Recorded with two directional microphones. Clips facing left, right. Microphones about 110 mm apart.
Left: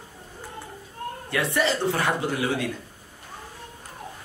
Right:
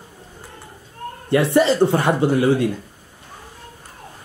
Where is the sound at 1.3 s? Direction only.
30° right (ahead or behind).